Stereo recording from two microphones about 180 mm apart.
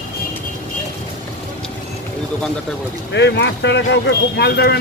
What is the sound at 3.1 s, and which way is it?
Speech, 75° left (ahead or behind).